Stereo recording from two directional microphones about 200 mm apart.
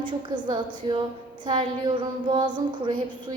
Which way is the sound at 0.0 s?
20° right (ahead or behind).